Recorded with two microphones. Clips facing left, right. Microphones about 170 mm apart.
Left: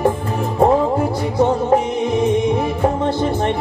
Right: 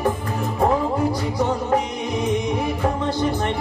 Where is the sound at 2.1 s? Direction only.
25° left (ahead or behind).